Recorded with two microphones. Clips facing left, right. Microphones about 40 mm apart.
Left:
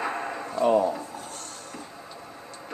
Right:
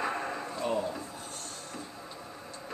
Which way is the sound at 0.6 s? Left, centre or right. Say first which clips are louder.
Left 11 dB; left.